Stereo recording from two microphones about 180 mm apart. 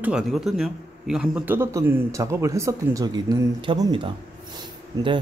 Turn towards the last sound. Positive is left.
turn(degrees=-25)  # may be behind; listen again after turning